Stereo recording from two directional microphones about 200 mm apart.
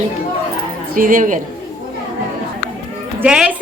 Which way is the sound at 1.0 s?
40° right (ahead or behind).